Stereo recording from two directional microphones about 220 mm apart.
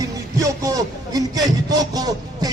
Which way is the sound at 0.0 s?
15° right (ahead or behind).